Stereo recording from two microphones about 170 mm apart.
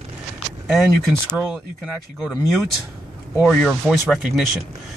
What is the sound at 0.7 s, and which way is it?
Speech, centre (ahead or behind).